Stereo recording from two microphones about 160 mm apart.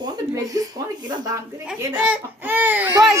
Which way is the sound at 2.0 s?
5° right (ahead or behind).